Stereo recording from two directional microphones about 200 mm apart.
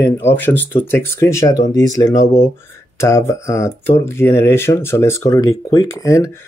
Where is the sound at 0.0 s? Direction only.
10° left (ahead or behind).